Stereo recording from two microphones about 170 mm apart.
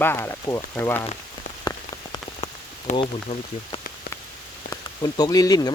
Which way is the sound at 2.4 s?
35° left (ahead or behind).